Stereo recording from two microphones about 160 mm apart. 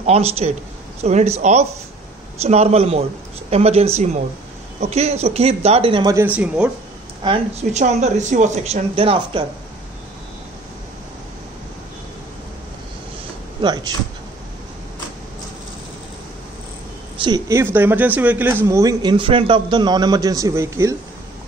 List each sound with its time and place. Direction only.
0.0 s speech: 40° right (ahead or behind)
6.1 s speech: 10° right (ahead or behind)
7.2 s a man's voice: 30° right (ahead or behind)
7.7 s speech: 45° right (ahead or behind)
13.6 s speech: 25° right (ahead or behind)
17.5 s a man's voice: 15° right (ahead or behind)